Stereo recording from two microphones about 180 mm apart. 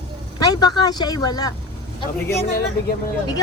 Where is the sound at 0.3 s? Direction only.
20° left (ahead or behind).